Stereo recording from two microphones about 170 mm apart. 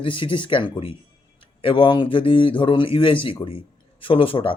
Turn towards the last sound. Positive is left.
turn(degrees=30)  # may be behind; listen again after turning